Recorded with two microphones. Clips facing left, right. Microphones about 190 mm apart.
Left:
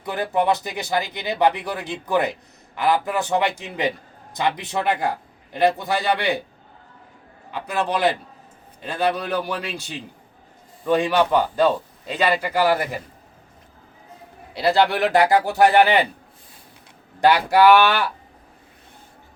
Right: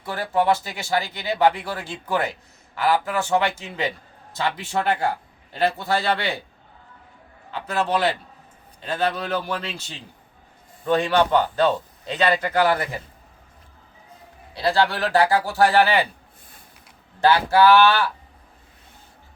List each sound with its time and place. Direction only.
0.0 s speech: 20° left (ahead or behind)
7.7 s speech: 15° left (ahead or behind)
14.7 s speech: 20° left (ahead or behind)
17.2 s speech: 15° left (ahead or behind)